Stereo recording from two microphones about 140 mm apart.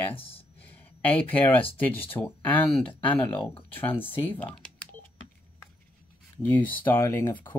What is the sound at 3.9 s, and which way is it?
Speech, 40° left (ahead or behind).